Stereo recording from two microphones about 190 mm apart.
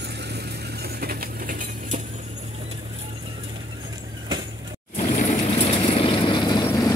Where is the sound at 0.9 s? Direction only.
50° right (ahead or behind).